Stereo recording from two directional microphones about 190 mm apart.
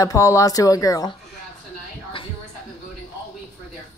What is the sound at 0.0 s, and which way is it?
Speech, 15° left (ahead or behind).